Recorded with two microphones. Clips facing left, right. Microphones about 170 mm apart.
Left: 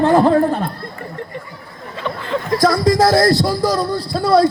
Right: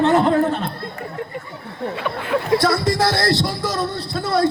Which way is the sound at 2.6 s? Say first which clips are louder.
Left 5 dB; 25° right (ahead or behind).